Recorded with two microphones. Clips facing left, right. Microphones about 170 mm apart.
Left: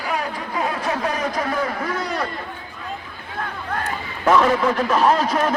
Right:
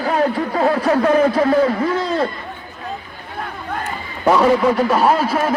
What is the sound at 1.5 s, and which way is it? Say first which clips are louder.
Speech: right 9 dB; 30° right (ahead or behind).